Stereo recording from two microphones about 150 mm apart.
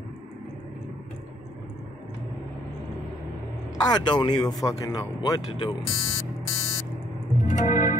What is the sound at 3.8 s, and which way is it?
Speech, 30° left (ahead or behind).